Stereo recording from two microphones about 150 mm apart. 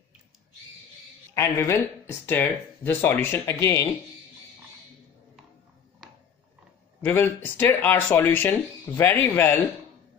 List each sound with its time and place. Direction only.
1.3 s speech: 20° left (ahead or behind)
7.0 s speech: 15° left (ahead or behind)